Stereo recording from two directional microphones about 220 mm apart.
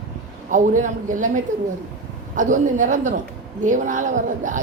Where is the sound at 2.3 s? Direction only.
35° right (ahead or behind).